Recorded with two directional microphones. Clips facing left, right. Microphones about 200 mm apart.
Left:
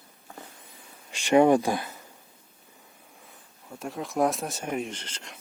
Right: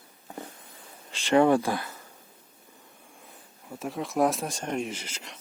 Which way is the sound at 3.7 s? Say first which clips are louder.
Right 1 dB; centre (ahead or behind).